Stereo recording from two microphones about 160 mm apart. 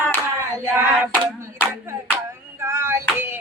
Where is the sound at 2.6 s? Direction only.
15° right (ahead or behind).